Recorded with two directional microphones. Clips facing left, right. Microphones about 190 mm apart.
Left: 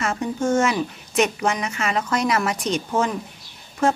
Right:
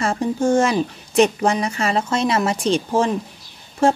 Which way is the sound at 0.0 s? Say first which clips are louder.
Right 4 dB; 30° right (ahead or behind).